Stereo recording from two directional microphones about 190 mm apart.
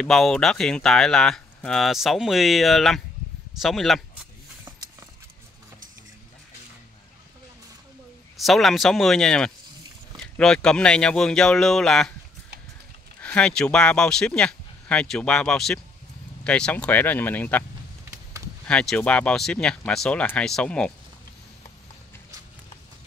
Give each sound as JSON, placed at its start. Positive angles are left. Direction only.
{"t": 0.0, "sound": "speech", "side_deg": 0}
{"t": 8.4, "sound": "speech", "side_deg": 0}
{"t": 13.2, "sound": "speech", "side_deg": 5}
{"t": 18.7, "sound": "speech", "side_deg": 5}